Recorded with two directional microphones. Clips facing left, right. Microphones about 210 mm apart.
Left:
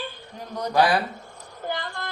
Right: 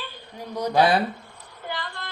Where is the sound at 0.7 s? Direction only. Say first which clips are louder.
Right 1 dB; 25° right (ahead or behind).